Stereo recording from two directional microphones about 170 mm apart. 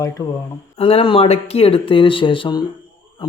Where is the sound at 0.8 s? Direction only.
35° left (ahead or behind).